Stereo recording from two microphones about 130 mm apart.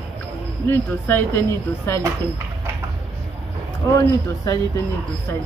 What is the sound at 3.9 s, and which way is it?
Speech, 25° left (ahead or behind).